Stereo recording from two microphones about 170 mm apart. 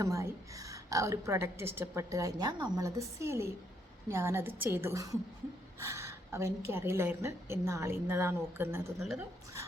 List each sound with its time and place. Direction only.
0.0 s a woman's voice: 15° right (ahead or behind)